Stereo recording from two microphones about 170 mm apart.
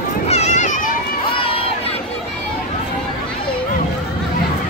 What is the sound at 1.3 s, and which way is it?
Crowd, 30° left (ahead or behind).